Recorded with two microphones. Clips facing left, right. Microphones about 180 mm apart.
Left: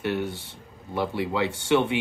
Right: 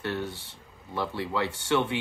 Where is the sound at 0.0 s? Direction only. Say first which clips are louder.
Left 4 dB; 15° left (ahead or behind).